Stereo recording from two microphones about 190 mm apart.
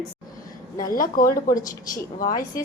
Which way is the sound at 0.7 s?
45° left (ahead or behind).